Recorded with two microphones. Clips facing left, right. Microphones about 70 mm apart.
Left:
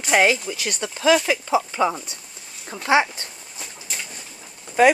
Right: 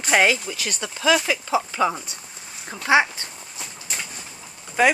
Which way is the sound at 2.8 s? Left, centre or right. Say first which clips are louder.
Even; right.